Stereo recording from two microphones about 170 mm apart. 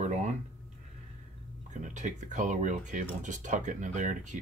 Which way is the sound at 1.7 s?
45° right (ahead or behind).